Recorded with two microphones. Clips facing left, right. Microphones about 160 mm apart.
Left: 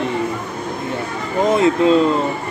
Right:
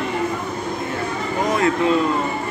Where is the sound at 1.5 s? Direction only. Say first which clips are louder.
Left 5 dB; 25° left (ahead or behind).